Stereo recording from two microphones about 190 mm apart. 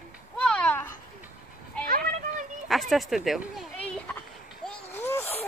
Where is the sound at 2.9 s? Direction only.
Centre (ahead or behind).